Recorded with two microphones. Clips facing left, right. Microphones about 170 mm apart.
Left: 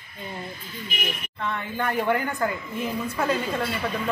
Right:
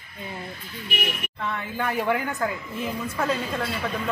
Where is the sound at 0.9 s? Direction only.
70° right (ahead or behind).